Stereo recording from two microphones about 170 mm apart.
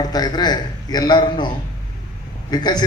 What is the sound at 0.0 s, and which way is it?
A man's voice, 25° left (ahead or behind).